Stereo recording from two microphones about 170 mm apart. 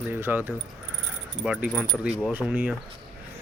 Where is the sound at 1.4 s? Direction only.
5° right (ahead or behind).